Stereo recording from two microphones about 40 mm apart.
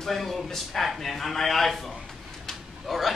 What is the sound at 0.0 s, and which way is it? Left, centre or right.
Speech, centre.